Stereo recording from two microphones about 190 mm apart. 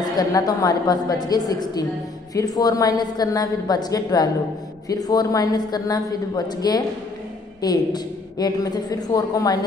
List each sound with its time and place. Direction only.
0.2 s a woman's voice: 20° left (ahead or behind)